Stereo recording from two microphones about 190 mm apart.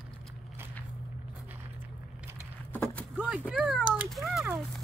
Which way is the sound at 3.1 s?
5° right (ahead or behind).